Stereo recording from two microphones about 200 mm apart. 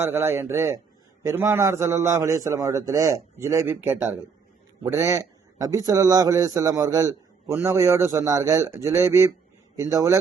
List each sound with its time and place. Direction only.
0.0 s a man's voice: 10° right (ahead or behind)